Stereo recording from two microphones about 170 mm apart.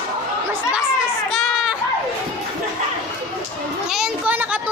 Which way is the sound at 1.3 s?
Centre (ahead or behind).